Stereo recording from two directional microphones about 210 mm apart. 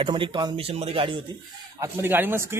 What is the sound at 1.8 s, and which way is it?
Speech, 10° right (ahead or behind).